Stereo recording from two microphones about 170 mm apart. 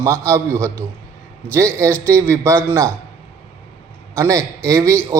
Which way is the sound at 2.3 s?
15° right (ahead or behind).